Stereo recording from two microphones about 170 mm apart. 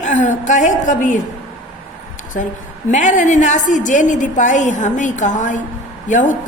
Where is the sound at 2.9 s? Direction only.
45° left (ahead or behind).